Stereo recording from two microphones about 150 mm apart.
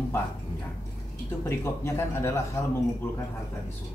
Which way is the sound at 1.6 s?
15° left (ahead or behind).